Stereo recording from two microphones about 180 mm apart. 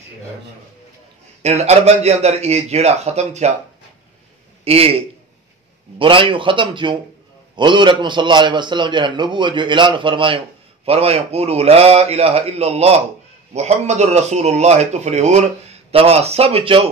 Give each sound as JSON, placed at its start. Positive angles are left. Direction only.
{"t": 1.4, "sound": "a man's voice", "side_deg": -35}
{"t": 4.6, "sound": "a man's voice", "side_deg": -35}